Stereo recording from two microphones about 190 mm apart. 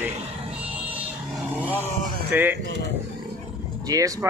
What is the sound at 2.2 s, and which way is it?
Speech, 10° right (ahead or behind).